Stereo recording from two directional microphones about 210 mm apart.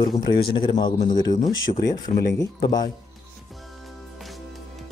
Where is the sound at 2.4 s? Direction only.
20° left (ahead or behind).